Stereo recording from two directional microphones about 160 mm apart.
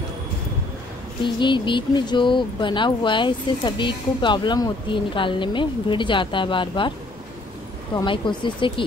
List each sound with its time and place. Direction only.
1.2 s speech: 30° left (ahead or behind)
7.9 s speech: 30° left (ahead or behind)